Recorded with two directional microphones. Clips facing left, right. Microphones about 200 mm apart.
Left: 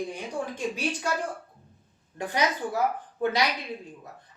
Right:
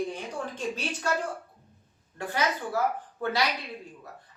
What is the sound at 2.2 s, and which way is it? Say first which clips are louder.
A woman's voice: left 2 dB; 15° left (ahead or behind).